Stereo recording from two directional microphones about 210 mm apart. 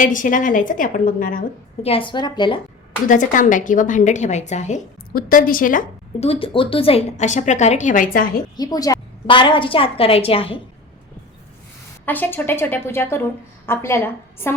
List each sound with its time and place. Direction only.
0.0 s a woman's voice: 40° left (ahead or behind)
1.8 s a woman's voice: 25° left (ahead or behind)
3.1 s a woman's voice: 40° left (ahead or behind)
8.5 s a woman's voice: 20° left (ahead or behind)
12.0 s a woman's voice: 10° left (ahead or behind)